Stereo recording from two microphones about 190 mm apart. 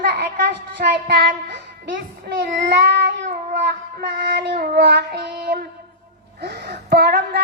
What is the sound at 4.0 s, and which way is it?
A woman's voice, 60° right (ahead or behind).